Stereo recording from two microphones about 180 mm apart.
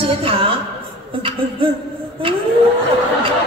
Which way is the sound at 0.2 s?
30° right (ahead or behind).